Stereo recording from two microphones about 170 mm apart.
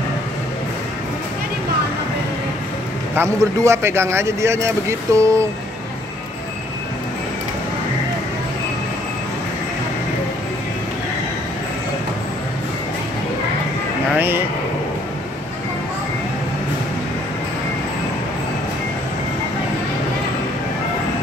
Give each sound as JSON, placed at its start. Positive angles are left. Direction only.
{"t": 3.2, "sound": "speech", "side_deg": -15}
{"t": 14.1, "sound": "speech", "side_deg": -10}